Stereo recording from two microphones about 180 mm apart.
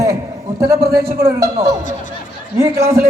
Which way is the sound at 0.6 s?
60° right (ahead or behind).